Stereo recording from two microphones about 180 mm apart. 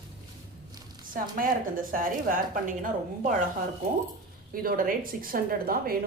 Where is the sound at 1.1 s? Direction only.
50° right (ahead or behind).